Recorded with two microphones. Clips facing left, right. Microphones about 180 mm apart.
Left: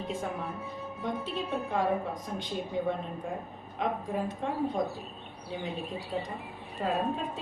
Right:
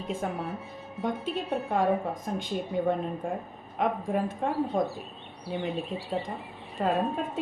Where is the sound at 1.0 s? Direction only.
50° right (ahead or behind).